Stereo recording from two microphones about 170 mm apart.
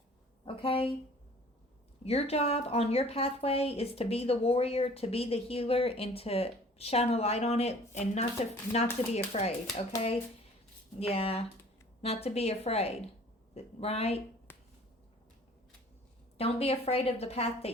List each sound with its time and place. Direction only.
0.4 s speech: 30° left (ahead or behind)
2.0 s a woman's voice: 35° left (ahead or behind)
11.0 s a woman's voice: 35° left (ahead or behind)
14.5 s finger snapping: 15° left (ahead or behind)
16.4 s a woman's voice: 35° left (ahead or behind)